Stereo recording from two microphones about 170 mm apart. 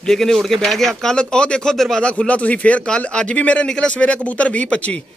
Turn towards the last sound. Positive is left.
turn(degrees=5)  # may be behind; listen again after turning